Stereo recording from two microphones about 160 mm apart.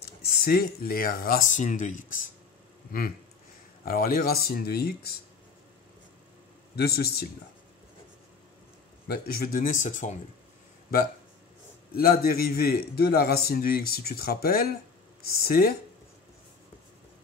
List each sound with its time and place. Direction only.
0.4 s speech: 70° left (ahead or behind); by 2.3 s 55° left (ahead or behind)
3.8 s a man's voice: 65° left (ahead or behind)
6.7 s speech: 80° left
9.0 s speech: 75° left (ahead or behind); by 10.1 s 50° left (ahead or behind)
11.9 s a man's voice: 65° left (ahead or behind)